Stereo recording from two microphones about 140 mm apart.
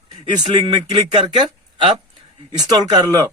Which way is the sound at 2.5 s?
30° right (ahead or behind).